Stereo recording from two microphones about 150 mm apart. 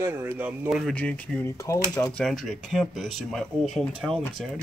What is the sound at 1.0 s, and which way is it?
Speech, 10° left (ahead or behind).